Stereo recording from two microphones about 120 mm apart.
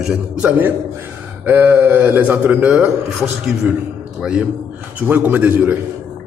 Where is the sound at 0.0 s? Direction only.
10° right (ahead or behind).